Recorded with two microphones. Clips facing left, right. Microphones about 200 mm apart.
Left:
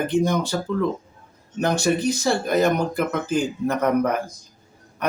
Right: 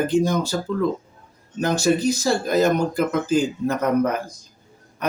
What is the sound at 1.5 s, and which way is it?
Speech, 60° left (ahead or behind).